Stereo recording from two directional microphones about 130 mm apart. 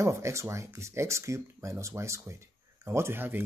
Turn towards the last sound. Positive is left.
turn(degrees=-15)  # may be behind; listen again after turning